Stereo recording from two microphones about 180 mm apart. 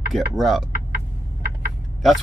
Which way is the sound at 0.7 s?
55° right (ahead or behind).